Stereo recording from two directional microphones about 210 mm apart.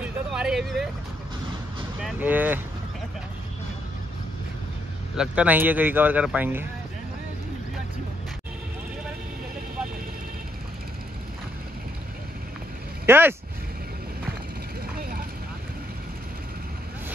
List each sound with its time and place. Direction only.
0.0 s vehicle: 5° right (ahead or behind)
2.0 s speech: 10° right (ahead or behind)
5.1 s speech: 5° right (ahead or behind)
13.0 s speech: 10° right (ahead or behind)
15.0 s vehicle: 45° right (ahead or behind)